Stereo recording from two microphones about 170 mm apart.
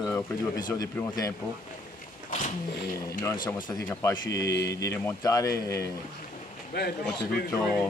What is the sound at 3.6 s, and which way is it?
Speech, 20° left (ahead or behind).